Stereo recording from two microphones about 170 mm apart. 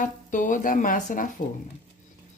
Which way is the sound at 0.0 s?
50° left (ahead or behind).